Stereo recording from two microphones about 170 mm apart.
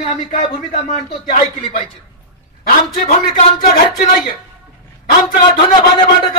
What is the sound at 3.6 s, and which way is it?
Speech, 65° left (ahead or behind).